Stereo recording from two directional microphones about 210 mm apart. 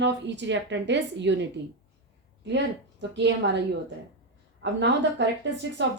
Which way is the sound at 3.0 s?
55° right (ahead or behind).